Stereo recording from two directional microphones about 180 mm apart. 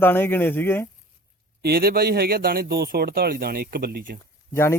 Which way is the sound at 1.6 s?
55° right (ahead or behind).